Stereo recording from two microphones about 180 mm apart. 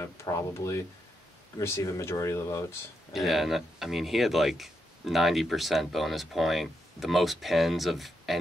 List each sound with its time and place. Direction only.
0.0 s speech: 15° left (ahead or behind)
3.1 s speech: centre (ahead or behind)